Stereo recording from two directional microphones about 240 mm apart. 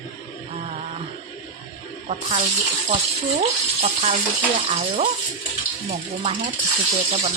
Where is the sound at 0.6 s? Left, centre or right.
Right.